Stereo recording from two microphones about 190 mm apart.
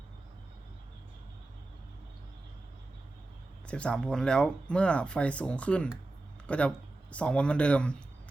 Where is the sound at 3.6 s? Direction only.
5° left (ahead or behind).